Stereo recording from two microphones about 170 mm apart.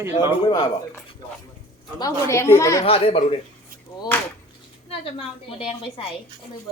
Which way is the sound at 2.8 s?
35° left (ahead or behind).